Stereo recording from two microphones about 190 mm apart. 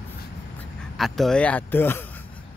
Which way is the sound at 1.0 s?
Centre (ahead or behind).